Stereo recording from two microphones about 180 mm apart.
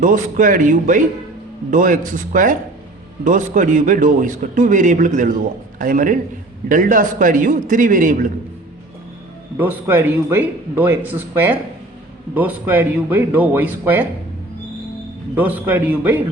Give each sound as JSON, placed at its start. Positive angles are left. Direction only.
{"t": 0.0, "sound": "a man's voice", "side_deg": -45}
{"t": 9.6, "sound": "a man's voice", "side_deg": -10}
{"t": 15.4, "sound": "a man's voice", "side_deg": -10}